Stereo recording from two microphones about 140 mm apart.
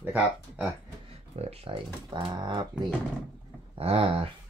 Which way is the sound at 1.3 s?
45° right (ahead or behind).